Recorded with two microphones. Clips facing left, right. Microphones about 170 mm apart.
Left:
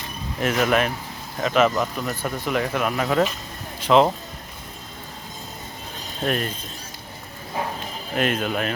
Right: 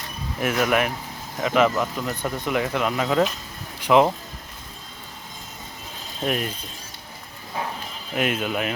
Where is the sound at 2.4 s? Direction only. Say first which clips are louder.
Even; 20° right (ahead or behind).